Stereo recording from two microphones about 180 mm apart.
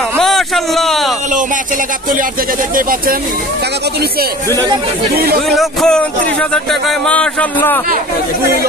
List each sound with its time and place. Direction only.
0.2 s a sound: centre (ahead or behind)
2.7 s speech: 50° right (ahead or behind)
5.1 s speech: 60° right (ahead or behind)
5.6 s speech: centre (ahead or behind)